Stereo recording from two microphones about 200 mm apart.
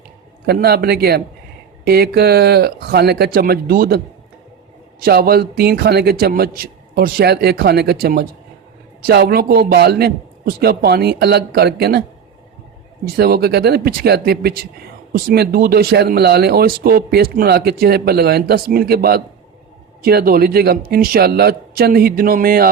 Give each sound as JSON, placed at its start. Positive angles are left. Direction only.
{"t": 0.4, "sound": "speech", "side_deg": -50}
{"t": 5.0, "sound": "speech", "side_deg": -50}
{"t": 13.1, "sound": "speech", "side_deg": -50}